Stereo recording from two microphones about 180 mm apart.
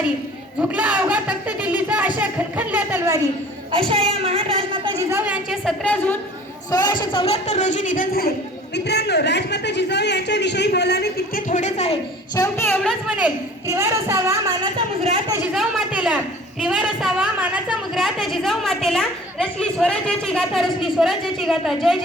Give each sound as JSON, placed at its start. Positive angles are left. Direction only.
{"t": 0.6, "sound": "speech", "side_deg": -10}
{"t": 3.7, "sound": "a woman's voice", "side_deg": -30}
{"t": 4.9, "sound": "a woman's voice", "side_deg": -15}
{"t": 6.7, "sound": "a woman's voice", "side_deg": 20}
{"t": 8.7, "sound": "a man's voice", "side_deg": 65}
{"t": 11.4, "sound": "a woman's voice", "side_deg": 45}
{"t": 12.4, "sound": "a woman's voice", "side_deg": 15}
{"t": 13.7, "sound": "speech", "side_deg": -15}
{"t": 14.8, "sound": "a woman's voice", "side_deg": -30}
{"t": 15.5, "sound": "a woman's voice", "side_deg": -5}